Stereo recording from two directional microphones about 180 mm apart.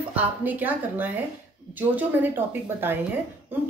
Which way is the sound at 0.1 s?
10° right (ahead or behind).